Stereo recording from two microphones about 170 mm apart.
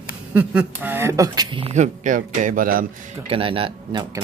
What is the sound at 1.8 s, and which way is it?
Speech, 50° right (ahead or behind).